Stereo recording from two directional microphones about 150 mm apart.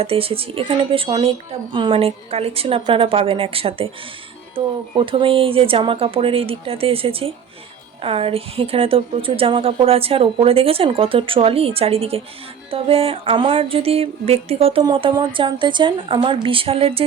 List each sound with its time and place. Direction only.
0.0 s speech: 40° right (ahead or behind)